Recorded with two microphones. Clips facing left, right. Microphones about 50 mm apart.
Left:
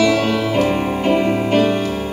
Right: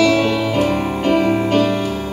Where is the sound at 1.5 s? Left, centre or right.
Centre.